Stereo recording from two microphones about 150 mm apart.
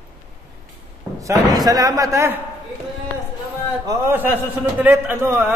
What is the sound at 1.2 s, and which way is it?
Speech, 25° right (ahead or behind).